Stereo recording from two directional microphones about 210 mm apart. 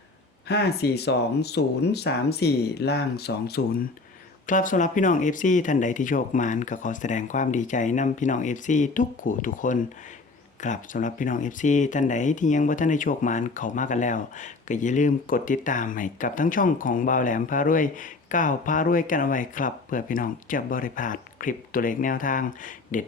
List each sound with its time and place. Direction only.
0.4 s speech: 50° left (ahead or behind)
4.4 s speech: 40° left (ahead or behind)